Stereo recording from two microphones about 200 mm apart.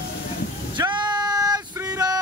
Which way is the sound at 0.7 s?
20° right (ahead or behind).